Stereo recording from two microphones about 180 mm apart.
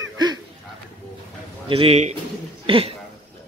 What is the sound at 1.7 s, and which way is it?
Speech, 35° right (ahead or behind).